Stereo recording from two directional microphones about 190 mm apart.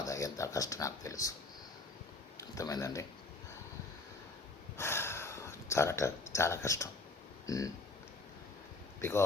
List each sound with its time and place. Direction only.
0.0 s a sound: 15° left (ahead or behind)
2.4 s speech: 20° left (ahead or behind)
4.8 s speech: 15° left (ahead or behind)
9.0 s speech: 15° left (ahead or behind)